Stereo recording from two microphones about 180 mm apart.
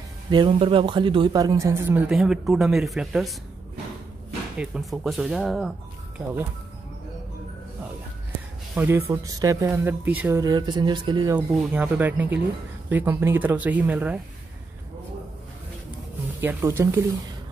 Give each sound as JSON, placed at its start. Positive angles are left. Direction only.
{"t": 0.3, "sound": "speech", "side_deg": -25}
{"t": 4.6, "sound": "speech", "side_deg": -5}
{"t": 8.7, "sound": "speech", "side_deg": -15}
{"t": 11.3, "sound": "speech", "side_deg": -10}
{"t": 16.3, "sound": "speech", "side_deg": -15}